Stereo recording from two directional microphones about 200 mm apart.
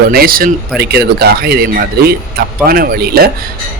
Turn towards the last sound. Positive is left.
turn(degrees=-50)  # may be behind; listen again after turning